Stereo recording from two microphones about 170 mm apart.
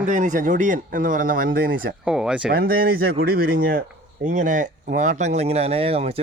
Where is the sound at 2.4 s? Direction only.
60° right (ahead or behind).